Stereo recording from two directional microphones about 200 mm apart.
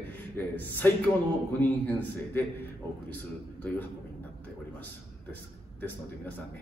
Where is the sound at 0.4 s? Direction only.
10° left (ahead or behind).